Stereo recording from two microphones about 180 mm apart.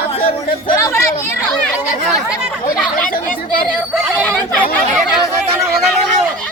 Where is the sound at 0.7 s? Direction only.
15° left (ahead or behind).